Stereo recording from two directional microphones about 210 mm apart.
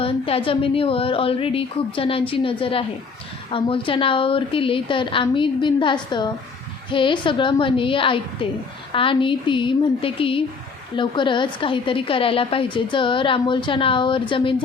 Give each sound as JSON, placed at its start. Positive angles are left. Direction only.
{"t": 0.0, "sound": "a woman's voice", "side_deg": 25}